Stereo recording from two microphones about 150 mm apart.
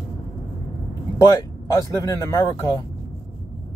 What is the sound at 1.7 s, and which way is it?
Speech, 20° left (ahead or behind).